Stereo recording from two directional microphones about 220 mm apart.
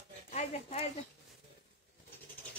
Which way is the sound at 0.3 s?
30° left (ahead or behind).